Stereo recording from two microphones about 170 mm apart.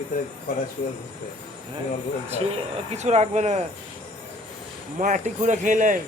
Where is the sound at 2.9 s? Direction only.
40° right (ahead or behind).